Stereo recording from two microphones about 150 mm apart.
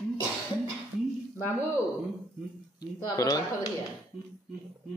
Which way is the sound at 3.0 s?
25° left (ahead or behind).